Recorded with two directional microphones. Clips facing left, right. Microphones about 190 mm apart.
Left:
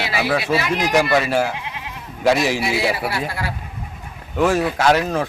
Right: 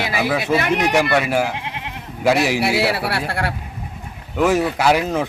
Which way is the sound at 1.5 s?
65° right (ahead or behind).